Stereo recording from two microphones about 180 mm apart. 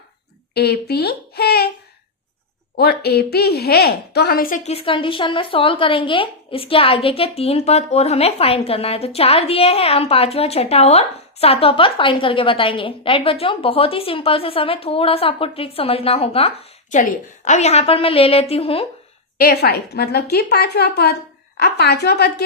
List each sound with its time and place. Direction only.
0.5 s speech: 60° left (ahead or behind)
2.7 s a woman's voice: 60° left (ahead or behind); by 16.5 s 30° left (ahead or behind)
16.9 s a woman's voice: 45° left (ahead or behind)
19.4 s a woman's voice: 60° left (ahead or behind)